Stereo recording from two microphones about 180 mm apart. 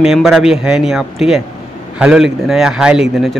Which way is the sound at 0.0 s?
Centre (ahead or behind).